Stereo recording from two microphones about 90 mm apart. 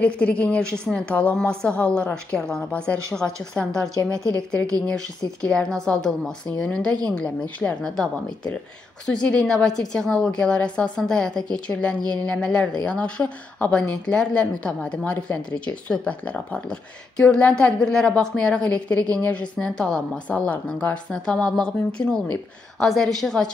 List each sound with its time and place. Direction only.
0.0 s a woman's voice: 10° left (ahead or behind)
3.8 s a woman's voice: 40° right (ahead or behind)
4.4 s a woman's voice: 10° left (ahead or behind)